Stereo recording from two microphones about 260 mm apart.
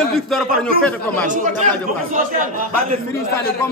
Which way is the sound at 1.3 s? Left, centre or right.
Right.